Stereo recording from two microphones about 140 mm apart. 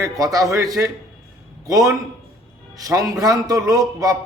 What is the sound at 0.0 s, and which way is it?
A man's voice, 25° right (ahead or behind).